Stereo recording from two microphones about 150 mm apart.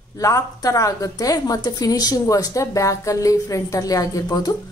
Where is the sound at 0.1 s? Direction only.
20° left (ahead or behind).